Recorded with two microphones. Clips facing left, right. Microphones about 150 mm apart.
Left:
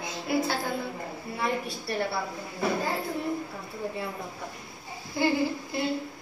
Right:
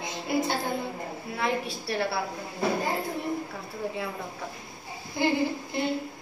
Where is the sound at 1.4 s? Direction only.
90° right.